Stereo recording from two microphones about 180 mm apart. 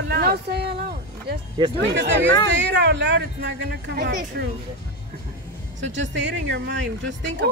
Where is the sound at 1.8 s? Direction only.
85° right.